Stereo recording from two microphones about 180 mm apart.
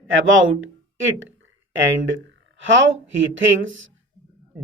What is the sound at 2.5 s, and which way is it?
A woman's voice, 90° right.